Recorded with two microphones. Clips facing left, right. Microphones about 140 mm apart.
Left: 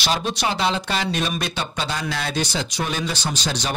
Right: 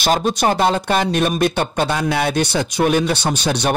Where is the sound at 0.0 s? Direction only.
50° right (ahead or behind).